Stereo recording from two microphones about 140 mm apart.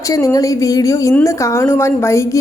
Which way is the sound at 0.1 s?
25° left (ahead or behind).